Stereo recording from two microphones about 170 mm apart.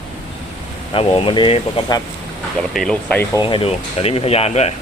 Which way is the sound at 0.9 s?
30° left (ahead or behind).